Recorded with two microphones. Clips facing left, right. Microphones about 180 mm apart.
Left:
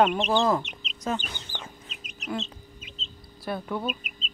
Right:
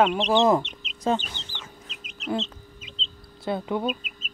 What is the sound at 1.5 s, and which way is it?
Chicken, 90° right.